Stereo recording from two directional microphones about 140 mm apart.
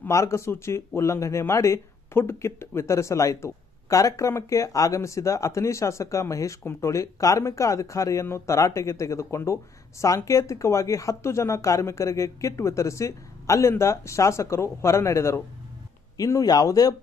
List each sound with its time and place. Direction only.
0.0 s speech: 20° left (ahead or behind)